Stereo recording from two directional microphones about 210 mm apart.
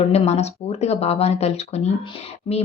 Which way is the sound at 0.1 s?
30° left (ahead or behind).